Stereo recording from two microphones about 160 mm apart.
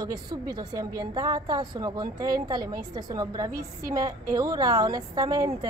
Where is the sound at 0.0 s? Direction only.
25° right (ahead or behind).